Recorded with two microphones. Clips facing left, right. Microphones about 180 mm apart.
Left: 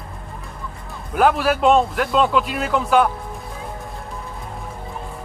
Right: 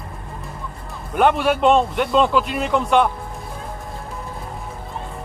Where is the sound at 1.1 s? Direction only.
Centre (ahead or behind).